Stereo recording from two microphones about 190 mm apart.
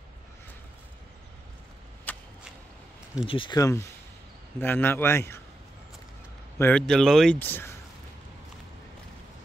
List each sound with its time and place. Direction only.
2.1 s a sound: 10° left (ahead or behind)
3.3 s speech: 25° left (ahead or behind)
6.6 s speech: 5° left (ahead or behind)